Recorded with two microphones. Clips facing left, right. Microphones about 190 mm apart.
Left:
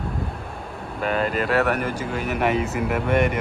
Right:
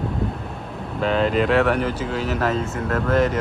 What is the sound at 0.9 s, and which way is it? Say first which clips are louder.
Speech: right 4 dB; 5° left (ahead or behind).